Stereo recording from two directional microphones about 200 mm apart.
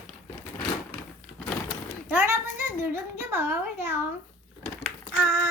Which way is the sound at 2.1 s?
10° right (ahead or behind).